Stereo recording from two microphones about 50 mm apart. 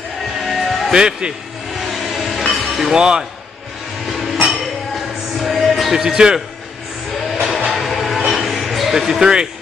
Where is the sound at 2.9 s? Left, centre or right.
Centre.